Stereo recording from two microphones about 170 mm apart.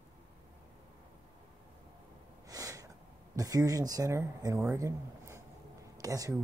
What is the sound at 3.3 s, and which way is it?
Speech, 20° right (ahead or behind).